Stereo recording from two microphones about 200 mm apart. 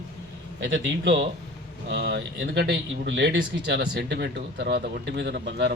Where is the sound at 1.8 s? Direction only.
60° right (ahead or behind).